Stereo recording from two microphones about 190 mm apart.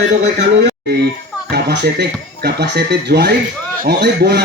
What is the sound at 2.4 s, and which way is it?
A man's voice, 60° right (ahead or behind).